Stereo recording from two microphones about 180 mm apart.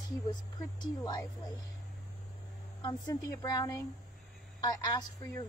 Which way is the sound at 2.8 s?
20° left (ahead or behind).